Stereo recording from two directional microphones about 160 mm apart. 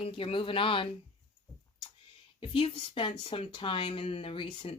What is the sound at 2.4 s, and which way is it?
Speech, 30° left (ahead or behind).